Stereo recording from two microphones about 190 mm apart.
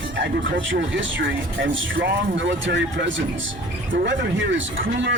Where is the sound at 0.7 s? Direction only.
80° right.